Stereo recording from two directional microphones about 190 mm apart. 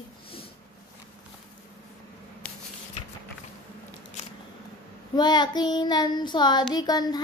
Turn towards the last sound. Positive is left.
turn(degrees=20)  # may be behind; listen again after turning